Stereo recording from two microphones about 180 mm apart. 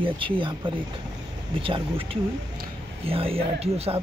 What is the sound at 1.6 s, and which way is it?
Speech, 30° right (ahead or behind).